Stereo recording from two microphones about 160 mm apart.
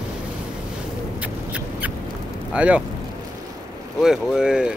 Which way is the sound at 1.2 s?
10° right (ahead or behind).